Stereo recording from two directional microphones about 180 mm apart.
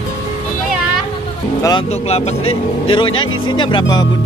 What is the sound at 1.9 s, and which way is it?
Speech, 35° left (ahead or behind).